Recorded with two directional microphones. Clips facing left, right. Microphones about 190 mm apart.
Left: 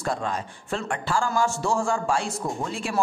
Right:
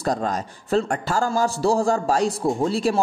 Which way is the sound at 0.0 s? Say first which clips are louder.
Right 4 dB; 40° right (ahead or behind).